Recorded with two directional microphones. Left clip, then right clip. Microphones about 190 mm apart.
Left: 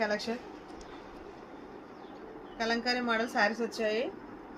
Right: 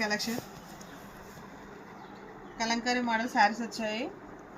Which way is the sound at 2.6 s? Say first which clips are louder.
Right 1 dB; 45° left (ahead or behind).